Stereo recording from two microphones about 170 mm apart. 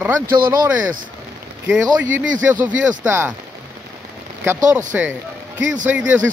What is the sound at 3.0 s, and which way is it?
Speech, 10° right (ahead or behind).